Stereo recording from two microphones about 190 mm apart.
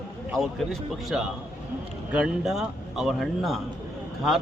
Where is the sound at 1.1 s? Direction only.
Centre (ahead or behind).